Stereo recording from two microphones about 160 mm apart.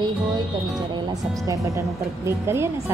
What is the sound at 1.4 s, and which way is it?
Speech, 20° right (ahead or behind).